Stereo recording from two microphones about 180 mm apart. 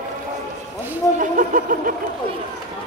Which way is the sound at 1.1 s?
45° right (ahead or behind).